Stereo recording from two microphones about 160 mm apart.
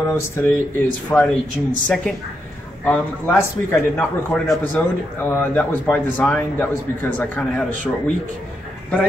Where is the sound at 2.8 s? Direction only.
10° left (ahead or behind).